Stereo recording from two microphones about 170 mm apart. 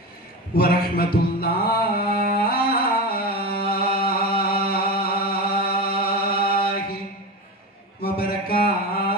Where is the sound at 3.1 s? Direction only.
60° left (ahead or behind).